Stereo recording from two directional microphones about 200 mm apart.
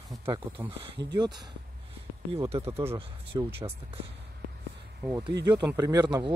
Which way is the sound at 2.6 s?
15° right (ahead or behind).